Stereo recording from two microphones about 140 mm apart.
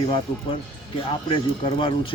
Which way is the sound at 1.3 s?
40° left (ahead or behind).